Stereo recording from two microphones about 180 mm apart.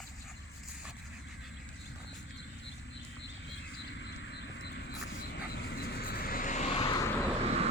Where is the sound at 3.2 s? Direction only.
85° left; by 7.0 s 35° left (ahead or behind).